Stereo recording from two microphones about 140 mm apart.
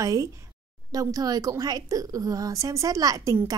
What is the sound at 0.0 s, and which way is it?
A woman's voice, 25° right (ahead or behind).